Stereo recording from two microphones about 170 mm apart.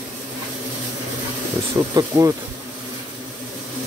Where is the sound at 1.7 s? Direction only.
20° right (ahead or behind).